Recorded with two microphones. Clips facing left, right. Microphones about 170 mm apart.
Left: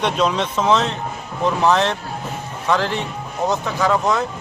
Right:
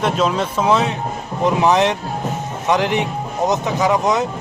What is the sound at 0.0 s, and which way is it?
A man's voice, 5° right (ahead or behind).